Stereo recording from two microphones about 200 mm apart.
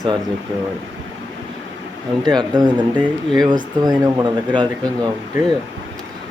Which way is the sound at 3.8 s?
20° right (ahead or behind).